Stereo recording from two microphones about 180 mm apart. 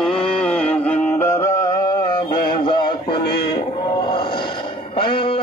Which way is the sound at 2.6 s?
25° left (ahead or behind).